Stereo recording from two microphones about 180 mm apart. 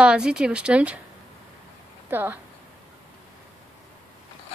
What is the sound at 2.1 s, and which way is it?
Speech, 10° right (ahead or behind).